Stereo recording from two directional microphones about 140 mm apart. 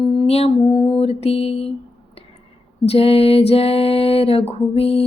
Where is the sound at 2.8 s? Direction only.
45° left (ahead or behind).